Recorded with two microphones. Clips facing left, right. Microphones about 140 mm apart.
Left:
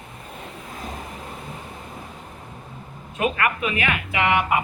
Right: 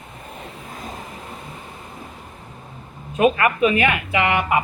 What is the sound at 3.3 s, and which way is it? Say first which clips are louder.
Speech: right 6 dB; 25° right (ahead or behind).